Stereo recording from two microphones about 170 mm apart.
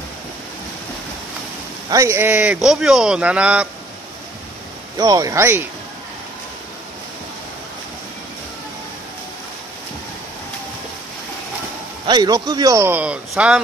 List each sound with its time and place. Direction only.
1.9 s a man's voice: 20° right (ahead or behind)
4.9 s a man's voice: 20° right (ahead or behind)
12.1 s a man's voice: 25° right (ahead or behind); by 13.6 s 5° right (ahead or behind)